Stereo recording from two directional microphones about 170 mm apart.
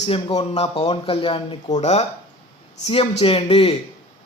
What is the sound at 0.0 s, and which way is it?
A man's voice, 30° left (ahead or behind).